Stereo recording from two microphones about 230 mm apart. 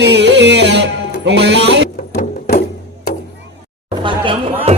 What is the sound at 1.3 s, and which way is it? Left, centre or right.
Music, right.